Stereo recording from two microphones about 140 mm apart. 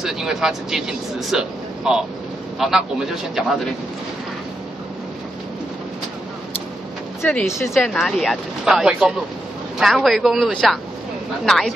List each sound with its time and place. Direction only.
0.0 s speech: 5° right (ahead or behind)
7.2 s speech: 15° left (ahead or behind)
7.7 s speech: centre (ahead or behind)